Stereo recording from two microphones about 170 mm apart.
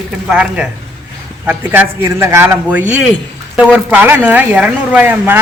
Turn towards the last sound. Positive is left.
turn(degrees=-10)  # may be behind; listen again after turning